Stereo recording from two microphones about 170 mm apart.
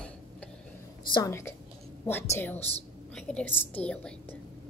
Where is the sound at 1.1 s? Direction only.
20° left (ahead or behind).